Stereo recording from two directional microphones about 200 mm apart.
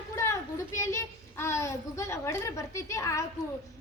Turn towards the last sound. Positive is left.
turn(degrees=15)  # may be behind; listen again after turning